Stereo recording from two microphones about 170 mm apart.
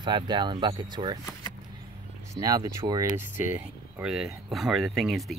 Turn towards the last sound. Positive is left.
turn(degrees=0)  # may be behind; listen again after turning